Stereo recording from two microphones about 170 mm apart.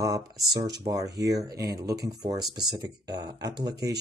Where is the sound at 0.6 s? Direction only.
20° right (ahead or behind).